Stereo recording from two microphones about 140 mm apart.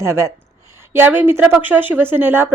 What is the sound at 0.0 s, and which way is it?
Speech, 20° right (ahead or behind).